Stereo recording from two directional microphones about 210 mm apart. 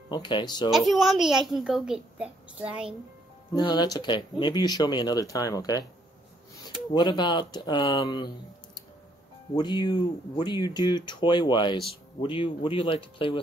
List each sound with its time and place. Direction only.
0.1 s speech: 20° left (ahead or behind)
0.7 s a child's voice: centre (ahead or behind)
3.5 s speech: 20° left (ahead or behind)
6.9 s speech: 20° left (ahead or behind)
9.6 s speech: 20° left (ahead or behind)